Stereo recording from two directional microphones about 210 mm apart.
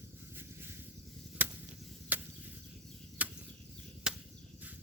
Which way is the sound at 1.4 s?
10° right (ahead or behind).